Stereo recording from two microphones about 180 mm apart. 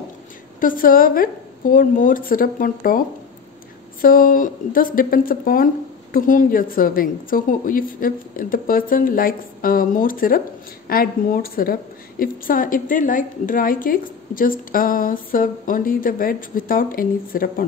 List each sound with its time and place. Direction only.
0.6 s a woman's voice: 50° left (ahead or behind)
4.0 s a woman's voice: 50° left (ahead or behind)